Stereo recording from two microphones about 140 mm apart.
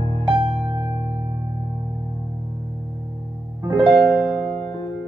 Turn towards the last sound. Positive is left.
turn(degrees=0)  # may be behind; listen again after turning